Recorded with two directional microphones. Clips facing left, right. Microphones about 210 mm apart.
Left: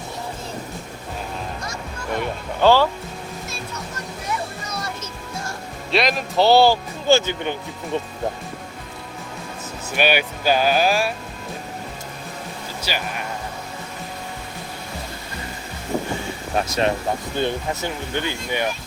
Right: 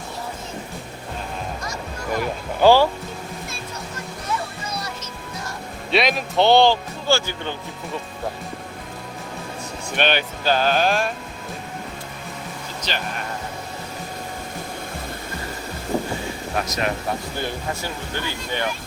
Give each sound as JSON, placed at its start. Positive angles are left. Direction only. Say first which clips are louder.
{"t": 2.1, "sound": "speech", "louder": "right 1 dB", "side_deg": -5}
{"t": 5.9, "sound": "speech", "louder": "even", "side_deg": 0}
{"t": 7.1, "sound": "speech", "louder": "left 4 dB", "side_deg": 20}
{"t": 9.9, "sound": "speech", "louder": "left 2 dB", "side_deg": 10}
{"t": 12.9, "sound": "speech", "louder": "left 1 dB", "side_deg": 10}
{"t": 16.6, "sound": "speech", "louder": "left 3 dB", "side_deg": 30}